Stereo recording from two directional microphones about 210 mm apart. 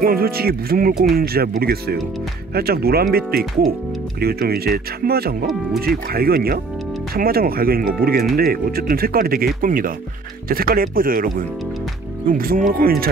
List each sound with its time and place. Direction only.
0.0 s speech: 45° right (ahead or behind)